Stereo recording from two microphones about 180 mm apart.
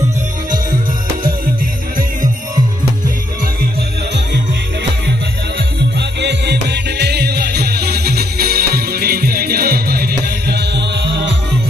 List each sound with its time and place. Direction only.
5.9 s music: 70° right (ahead or behind)